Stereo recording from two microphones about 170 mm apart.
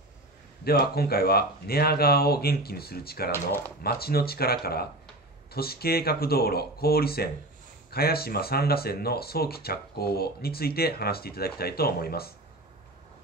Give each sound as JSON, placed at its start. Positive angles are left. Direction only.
{"t": 0.7, "sound": "speech", "side_deg": 65}